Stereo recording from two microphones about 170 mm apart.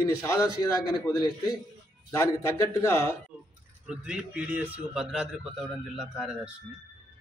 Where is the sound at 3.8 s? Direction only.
5° right (ahead or behind).